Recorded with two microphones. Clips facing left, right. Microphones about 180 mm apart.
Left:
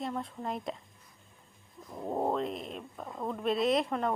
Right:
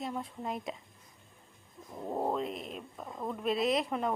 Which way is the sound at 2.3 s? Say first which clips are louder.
Left 2 dB; 5° right (ahead or behind).